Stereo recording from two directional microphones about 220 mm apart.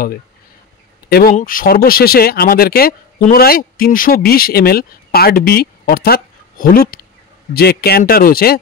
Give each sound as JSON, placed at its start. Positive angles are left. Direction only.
{"t": 1.0, "sound": "speech", "side_deg": 45}